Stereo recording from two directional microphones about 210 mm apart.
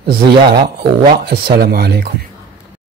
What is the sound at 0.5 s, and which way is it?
Speech, 45° right (ahead or behind).